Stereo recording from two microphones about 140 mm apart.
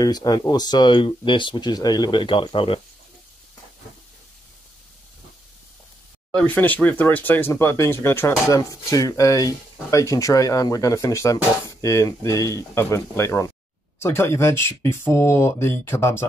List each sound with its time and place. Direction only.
0.0 s speech: 30° left (ahead or behind)
6.3 s speech: 10° left (ahead or behind)